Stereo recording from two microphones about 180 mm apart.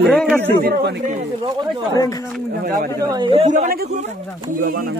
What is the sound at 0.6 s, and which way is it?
Speech, 60° right (ahead or behind).